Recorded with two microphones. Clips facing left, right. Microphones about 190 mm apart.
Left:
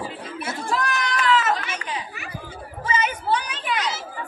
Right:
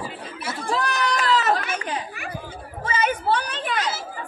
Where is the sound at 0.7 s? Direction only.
35° right (ahead or behind).